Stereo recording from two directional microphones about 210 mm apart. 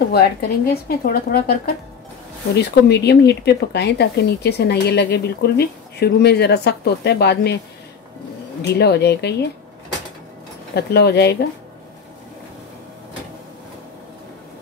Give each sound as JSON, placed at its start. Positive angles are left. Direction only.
{"t": 0.1, "sound": "speech", "side_deg": 45}
{"t": 8.6, "sound": "speech", "side_deg": 50}
{"t": 10.7, "sound": "speech", "side_deg": 50}